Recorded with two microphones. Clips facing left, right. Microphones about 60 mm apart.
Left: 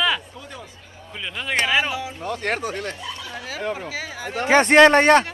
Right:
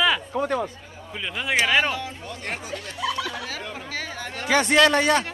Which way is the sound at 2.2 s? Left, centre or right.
Left.